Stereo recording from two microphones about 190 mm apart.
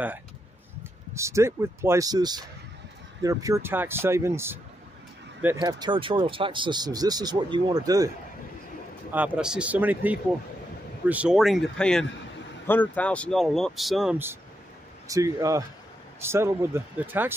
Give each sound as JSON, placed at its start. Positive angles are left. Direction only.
{"t": 1.1, "sound": "speech", "side_deg": -15}
{"t": 5.6, "sound": "speech", "side_deg": -20}
{"t": 9.1, "sound": "speech", "side_deg": -10}